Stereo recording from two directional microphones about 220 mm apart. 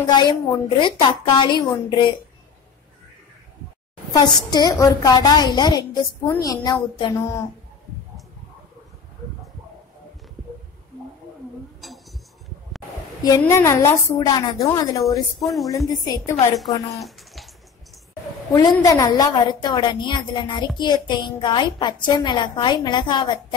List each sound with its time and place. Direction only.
0.0 s a woman's voice: 20° left (ahead or behind)
4.5 s a woman's voice: 15° left (ahead or behind)
13.4 s a woman's voice: 15° left (ahead or behind)
15.4 s speech: centre (ahead or behind)
15.9 s a woman's voice: 15° left (ahead or behind)
17.0 s bathtub: centre (ahead or behind)
18.8 s a woman's voice: 15° left (ahead or behind)